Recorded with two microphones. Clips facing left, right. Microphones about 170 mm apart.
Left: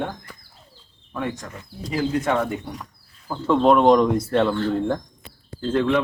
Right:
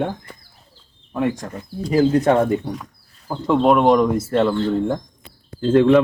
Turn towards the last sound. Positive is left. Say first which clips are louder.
# right 7 dB
turn(degrees=-25)  # may be behind; listen again after turning